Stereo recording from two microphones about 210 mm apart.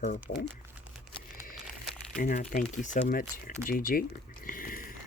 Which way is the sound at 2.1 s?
40° left (ahead or behind).